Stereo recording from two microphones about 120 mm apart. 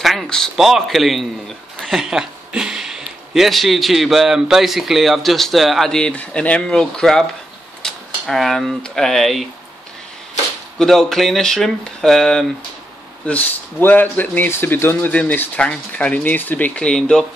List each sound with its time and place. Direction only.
0.0 s speech: centre (ahead or behind)
10.8 s speech: centre (ahead or behind)
13.3 s speech: 15° left (ahead or behind)